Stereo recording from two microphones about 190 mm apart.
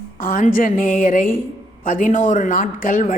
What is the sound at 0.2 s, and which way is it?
A woman's voice, 45° left (ahead or behind).